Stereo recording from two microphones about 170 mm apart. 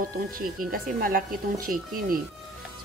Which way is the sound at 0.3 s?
60° right (ahead or behind).